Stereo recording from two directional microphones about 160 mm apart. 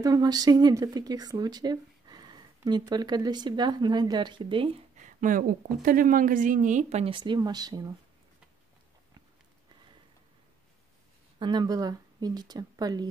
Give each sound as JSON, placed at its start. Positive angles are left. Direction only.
{"t": 0.0, "sound": "speech", "side_deg": -25}
{"t": 4.9, "sound": "a woman's voice", "side_deg": -55}
{"t": 11.3, "sound": "speech", "side_deg": -30}